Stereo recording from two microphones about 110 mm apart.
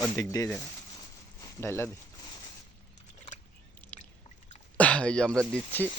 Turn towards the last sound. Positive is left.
turn(degrees=15)  # may be behind; listen again after turning